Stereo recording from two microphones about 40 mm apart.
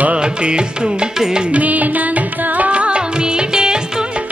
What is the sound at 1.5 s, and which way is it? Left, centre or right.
Music, right.